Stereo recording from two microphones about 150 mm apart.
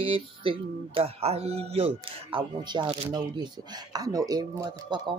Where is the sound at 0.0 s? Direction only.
35° right (ahead or behind).